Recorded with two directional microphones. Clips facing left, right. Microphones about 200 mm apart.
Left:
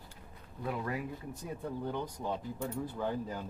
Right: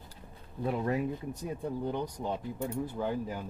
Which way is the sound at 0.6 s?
30° right (ahead or behind).